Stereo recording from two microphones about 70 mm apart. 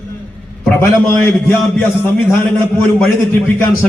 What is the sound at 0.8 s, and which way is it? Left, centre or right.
A man's voice, left.